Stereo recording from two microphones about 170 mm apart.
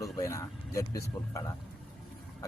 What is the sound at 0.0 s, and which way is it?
Speech, 15° left (ahead or behind).